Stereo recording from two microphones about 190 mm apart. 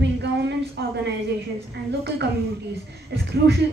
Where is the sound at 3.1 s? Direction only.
65° right (ahead or behind).